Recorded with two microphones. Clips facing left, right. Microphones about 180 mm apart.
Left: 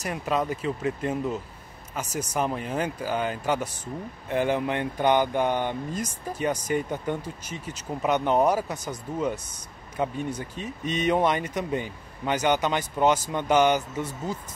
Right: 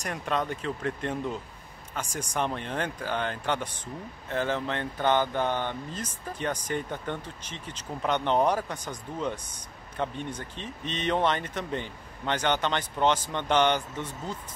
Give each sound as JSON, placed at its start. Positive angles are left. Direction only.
{"t": 0.0, "sound": "speech", "side_deg": 5}